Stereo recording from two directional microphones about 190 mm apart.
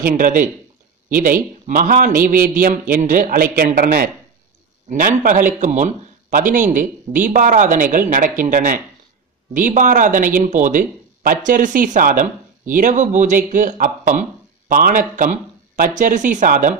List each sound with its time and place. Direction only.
0.0 s speech: 45° right (ahead or behind)